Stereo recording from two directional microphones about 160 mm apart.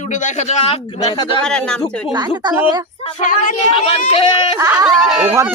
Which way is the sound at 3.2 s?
55° left (ahead or behind).